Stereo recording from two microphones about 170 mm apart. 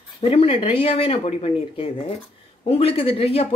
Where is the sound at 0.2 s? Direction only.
35° left (ahead or behind).